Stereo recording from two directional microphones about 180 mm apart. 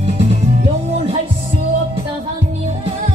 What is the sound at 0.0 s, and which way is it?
Music, 35° right (ahead or behind).